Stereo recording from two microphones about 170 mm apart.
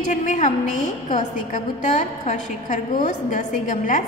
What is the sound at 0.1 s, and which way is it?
A woman's voice, 45° left (ahead or behind).